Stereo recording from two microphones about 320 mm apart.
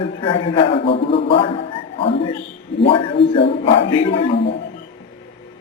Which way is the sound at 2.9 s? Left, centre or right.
Centre.